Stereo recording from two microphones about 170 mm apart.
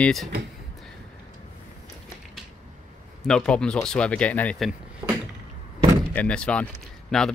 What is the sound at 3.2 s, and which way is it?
Speech, 5° left (ahead or behind).